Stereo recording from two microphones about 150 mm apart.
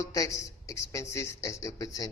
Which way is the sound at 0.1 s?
20° left (ahead or behind).